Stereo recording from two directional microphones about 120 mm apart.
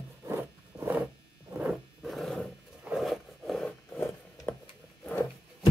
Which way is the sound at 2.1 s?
5° left (ahead or behind).